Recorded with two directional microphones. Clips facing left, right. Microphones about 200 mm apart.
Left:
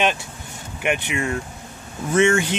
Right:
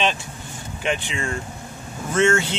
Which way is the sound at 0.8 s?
10° left (ahead or behind).